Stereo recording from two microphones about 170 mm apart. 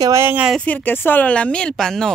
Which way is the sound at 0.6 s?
10° left (ahead or behind).